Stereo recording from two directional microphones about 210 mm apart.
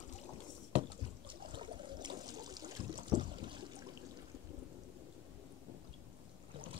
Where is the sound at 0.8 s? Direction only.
25° right (ahead or behind).